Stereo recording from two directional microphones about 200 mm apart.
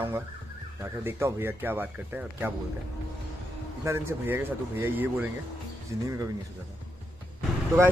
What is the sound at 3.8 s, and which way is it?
Speech, 15° right (ahead or behind).